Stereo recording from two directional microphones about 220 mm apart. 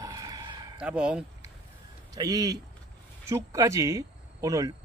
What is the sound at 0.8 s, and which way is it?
Speech, 5° right (ahead or behind).